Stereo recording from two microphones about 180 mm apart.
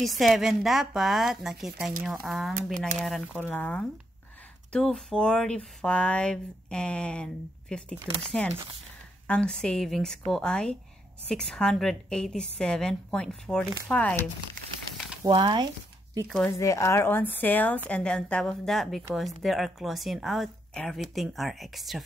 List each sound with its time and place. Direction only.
0.0 s a woman's voice: centre (ahead or behind)
15.2 s speech: 25° right (ahead or behind)
16.3 s a woman's voice: centre (ahead or behind)
16.5 s a woman's voice: 15° left (ahead or behind); by 22.0 s centre (ahead or behind)